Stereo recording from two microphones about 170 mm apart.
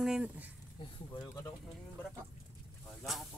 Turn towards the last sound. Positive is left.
turn(degrees=0)  # may be behind; listen again after turning